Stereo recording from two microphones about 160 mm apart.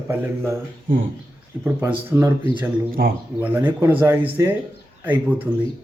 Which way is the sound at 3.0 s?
75° right (ahead or behind).